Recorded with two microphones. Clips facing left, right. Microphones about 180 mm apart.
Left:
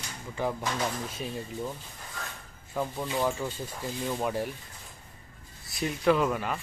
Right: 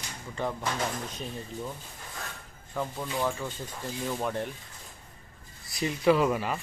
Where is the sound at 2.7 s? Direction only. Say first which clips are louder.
Left 2 dB; 10° left (ahead or behind).